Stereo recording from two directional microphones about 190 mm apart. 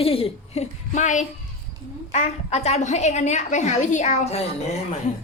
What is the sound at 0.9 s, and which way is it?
A woman's voice, 40° left (ahead or behind).